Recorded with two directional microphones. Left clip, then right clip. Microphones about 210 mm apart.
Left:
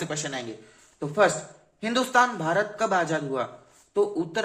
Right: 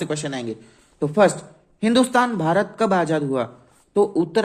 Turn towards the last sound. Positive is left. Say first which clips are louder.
# right 6 dB
turn(degrees=-45)  # may be behind; listen again after turning